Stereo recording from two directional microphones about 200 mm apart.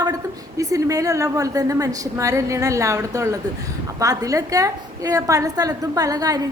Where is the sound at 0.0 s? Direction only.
15° right (ahead or behind).